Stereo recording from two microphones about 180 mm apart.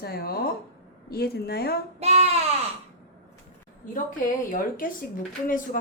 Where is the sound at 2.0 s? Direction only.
35° right (ahead or behind).